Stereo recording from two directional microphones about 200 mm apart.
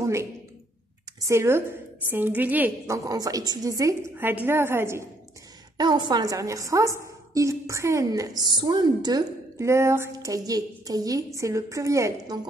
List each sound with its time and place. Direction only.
0.0 s a sound: 15° right (ahead or behind)
1.2 s a woman's voice: 15° right (ahead or behind)
5.8 s a woman's voice: 25° right (ahead or behind)